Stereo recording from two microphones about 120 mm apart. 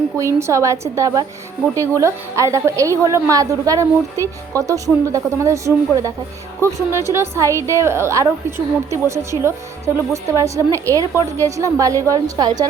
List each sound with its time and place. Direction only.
0.2 s a woman's voice: 25° right (ahead or behind)